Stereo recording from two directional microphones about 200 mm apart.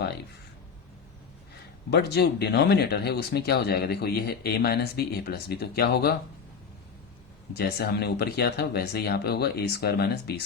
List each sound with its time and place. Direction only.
1.9 s speech: 55° left (ahead or behind)
7.5 s speech: 50° left (ahead or behind)